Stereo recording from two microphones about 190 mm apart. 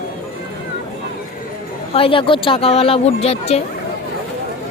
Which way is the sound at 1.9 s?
30° left (ahead or behind).